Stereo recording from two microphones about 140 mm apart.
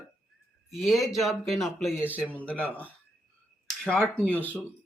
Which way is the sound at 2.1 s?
10° right (ahead or behind).